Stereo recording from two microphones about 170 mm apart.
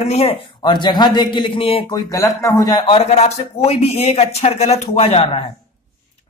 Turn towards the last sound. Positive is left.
turn(degrees=35)  # may be behind; listen again after turning